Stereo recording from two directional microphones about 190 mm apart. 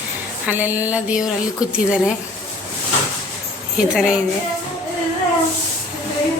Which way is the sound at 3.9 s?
5° right (ahead or behind).